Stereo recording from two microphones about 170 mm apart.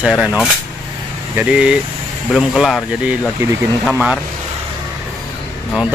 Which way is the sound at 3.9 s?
5° right (ahead or behind).